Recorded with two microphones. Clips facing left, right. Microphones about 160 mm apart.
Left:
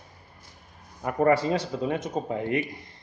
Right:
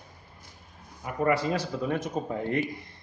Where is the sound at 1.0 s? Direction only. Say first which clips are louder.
Left 4 dB; 40° left (ahead or behind); by 2.6 s 20° left (ahead or behind).